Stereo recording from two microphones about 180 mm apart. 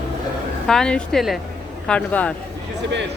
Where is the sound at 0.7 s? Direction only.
5° left (ahead or behind).